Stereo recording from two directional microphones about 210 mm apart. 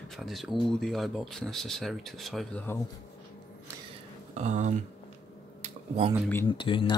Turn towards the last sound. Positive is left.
turn(degrees=25)  # may be behind; listen again after turning